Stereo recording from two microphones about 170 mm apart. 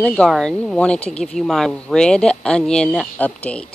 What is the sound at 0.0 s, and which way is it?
Speech, 5° left (ahead or behind).